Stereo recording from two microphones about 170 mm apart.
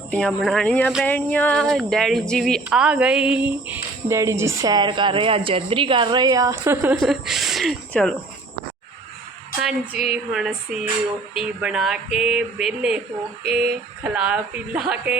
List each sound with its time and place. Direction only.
0.1 s speech: 5° left (ahead or behind); by 6.9 s 15° right (ahead or behind)
6.9 s speech: centre (ahead or behind)
10.0 s speech: 5° right (ahead or behind)